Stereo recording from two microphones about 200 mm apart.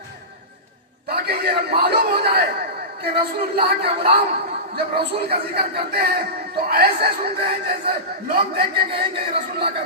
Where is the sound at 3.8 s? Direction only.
30° right (ahead or behind).